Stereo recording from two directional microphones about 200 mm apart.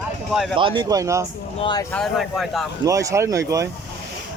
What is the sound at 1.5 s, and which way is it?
Speech, 20° left (ahead or behind).